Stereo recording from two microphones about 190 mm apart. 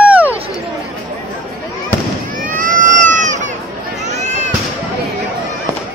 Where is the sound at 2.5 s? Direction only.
45° right (ahead or behind).